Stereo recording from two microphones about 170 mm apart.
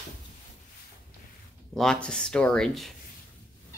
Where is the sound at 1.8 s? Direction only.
5° left (ahead or behind).